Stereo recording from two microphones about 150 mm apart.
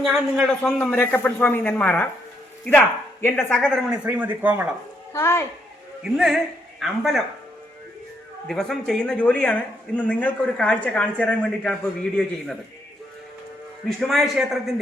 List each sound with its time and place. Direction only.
0.0 s a man's voice: centre (ahead or behind)
0.9 s a man's voice: 15° left (ahead or behind)
4.0 s speech: 10° right (ahead or behind)
5.1 s speech: 15° left (ahead or behind)
6.0 s a man's voice: centre (ahead or behind)
8.4 s speech: 5° left (ahead or behind)
14.1 s a man's voice: centre (ahead or behind)